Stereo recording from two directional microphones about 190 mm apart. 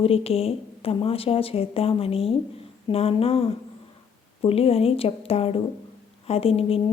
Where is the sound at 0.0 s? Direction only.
30° left (ahead or behind).